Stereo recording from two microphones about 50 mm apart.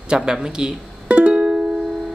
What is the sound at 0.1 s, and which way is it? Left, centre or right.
Music, centre.